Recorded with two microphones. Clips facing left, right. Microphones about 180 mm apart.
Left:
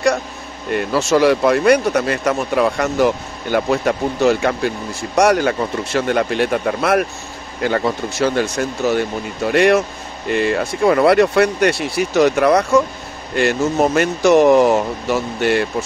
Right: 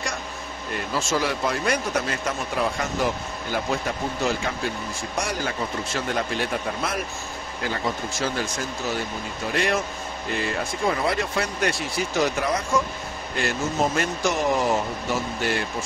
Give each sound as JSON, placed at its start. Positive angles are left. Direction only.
{"t": 0.7, "sound": "speech", "side_deg": 70}